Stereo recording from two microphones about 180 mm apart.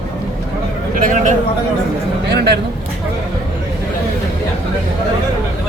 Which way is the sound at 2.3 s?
65° right (ahead or behind).